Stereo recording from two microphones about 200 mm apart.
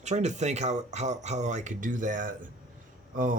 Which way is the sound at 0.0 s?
35° right (ahead or behind).